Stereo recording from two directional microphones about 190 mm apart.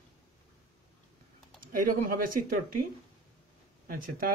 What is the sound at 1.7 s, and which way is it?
Speech, 50° right (ahead or behind).